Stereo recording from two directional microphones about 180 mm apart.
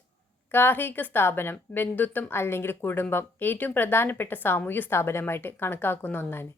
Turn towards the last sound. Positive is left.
turn(degrees=10)  # may be behind; listen again after turning